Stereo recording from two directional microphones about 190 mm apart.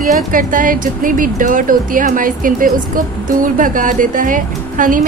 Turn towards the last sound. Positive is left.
turn(degrees=-45)  # may be behind; listen again after turning